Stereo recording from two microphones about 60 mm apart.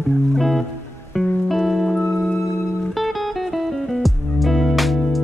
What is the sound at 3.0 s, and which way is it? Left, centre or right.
Music, centre.